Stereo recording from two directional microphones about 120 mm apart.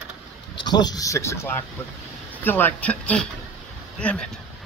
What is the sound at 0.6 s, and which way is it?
Speech, 35° left (ahead or behind).